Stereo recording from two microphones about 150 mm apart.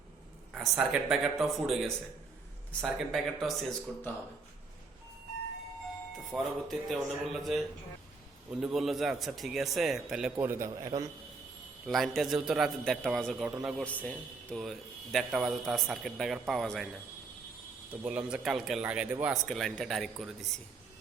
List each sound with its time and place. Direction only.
0.5 s a man's voice: centre (ahead or behind)
2.8 s a man's voice: centre (ahead or behind)
6.3 s a man's voice: centre (ahead or behind)
10.4 s a man's voice: 20° right (ahead or behind)
11.9 s a man's voice: centre (ahead or behind)
13.8 s a man's voice: 10° left (ahead or behind)
18.0 s a man's voice: 10° right (ahead or behind)
19.5 s a man's voice: centre (ahead or behind)